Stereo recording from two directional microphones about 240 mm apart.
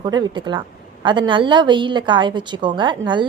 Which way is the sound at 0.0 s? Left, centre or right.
Centre.